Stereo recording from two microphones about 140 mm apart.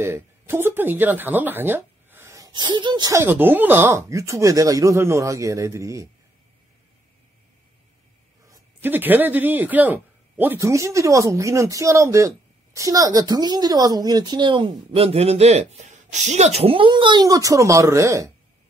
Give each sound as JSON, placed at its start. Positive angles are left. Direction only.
{"t": 0.0, "sound": "speech", "side_deg": -15}
{"t": 8.8, "sound": "speech", "side_deg": -15}